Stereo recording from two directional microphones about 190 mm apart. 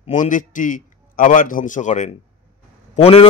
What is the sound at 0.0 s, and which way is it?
A man's voice, 40° left (ahead or behind).